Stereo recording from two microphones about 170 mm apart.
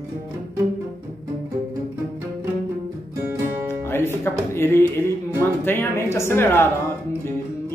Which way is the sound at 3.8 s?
15° left (ahead or behind).